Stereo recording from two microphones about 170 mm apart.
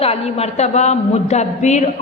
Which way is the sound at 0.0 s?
35° left (ahead or behind).